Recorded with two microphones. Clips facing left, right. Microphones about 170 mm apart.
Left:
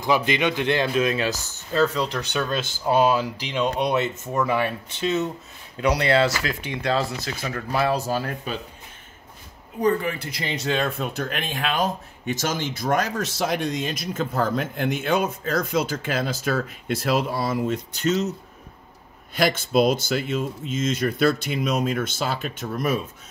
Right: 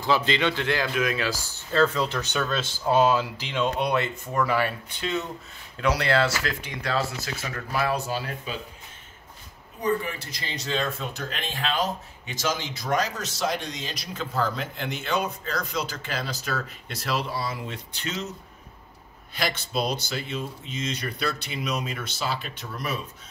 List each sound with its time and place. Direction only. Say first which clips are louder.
0.0 s speech: left 2 dB; 15° left (ahead or behind)
1.7 s speech: left 1 dB; 10° left (ahead or behind); by 8.0 s 30° left (ahead or behind)
9.8 s speech: left 5 dB; 65° left (ahead or behind); by 18.3 s 40° left (ahead or behind)
19.3 s speech: left 8 dB; 50° left (ahead or behind)